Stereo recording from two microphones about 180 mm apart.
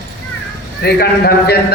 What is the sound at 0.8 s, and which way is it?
Speech, 60° left (ahead or behind).